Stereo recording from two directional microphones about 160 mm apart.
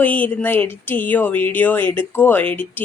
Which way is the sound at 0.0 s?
10° left (ahead or behind).